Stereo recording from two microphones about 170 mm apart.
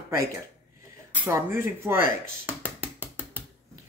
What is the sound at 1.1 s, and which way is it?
Speech, 15° right (ahead or behind).